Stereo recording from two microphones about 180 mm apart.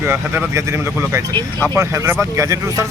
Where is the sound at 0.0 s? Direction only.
10° right (ahead or behind).